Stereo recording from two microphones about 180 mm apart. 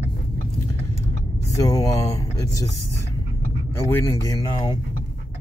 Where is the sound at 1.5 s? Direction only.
20° left (ahead or behind).